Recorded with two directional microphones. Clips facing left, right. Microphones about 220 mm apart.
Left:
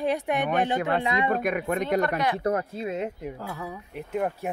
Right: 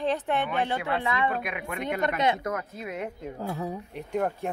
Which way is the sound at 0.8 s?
50° left (ahead or behind).